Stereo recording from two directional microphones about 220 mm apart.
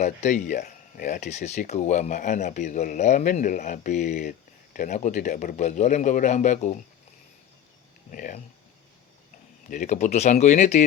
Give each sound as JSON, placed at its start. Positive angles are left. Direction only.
{"t": 0.0, "sound": "speech", "side_deg": 35}
{"t": 8.1, "sound": "speech", "side_deg": 40}
{"t": 9.6, "sound": "speech", "side_deg": 35}